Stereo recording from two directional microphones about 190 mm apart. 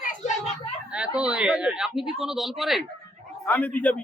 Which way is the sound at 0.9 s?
5° right (ahead or behind).